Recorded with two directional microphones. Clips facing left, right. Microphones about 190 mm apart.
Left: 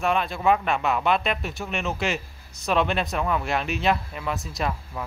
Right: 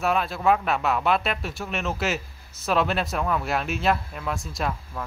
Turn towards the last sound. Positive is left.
turn(degrees=0)  # may be behind; listen again after turning